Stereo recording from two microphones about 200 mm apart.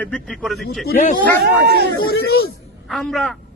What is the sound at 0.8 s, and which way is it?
Speech, 45° left (ahead or behind).